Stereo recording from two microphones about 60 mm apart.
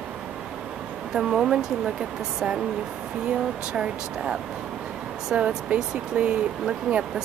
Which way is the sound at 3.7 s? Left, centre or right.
Centre.